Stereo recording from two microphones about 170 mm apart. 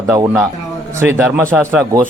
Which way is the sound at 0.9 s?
15° right (ahead or behind).